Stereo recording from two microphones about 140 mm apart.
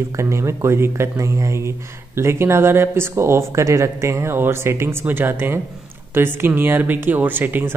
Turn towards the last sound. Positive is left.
turn(degrees=-15)  # may be behind; listen again after turning